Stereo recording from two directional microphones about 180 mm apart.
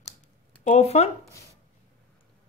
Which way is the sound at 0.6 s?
35° left (ahead or behind).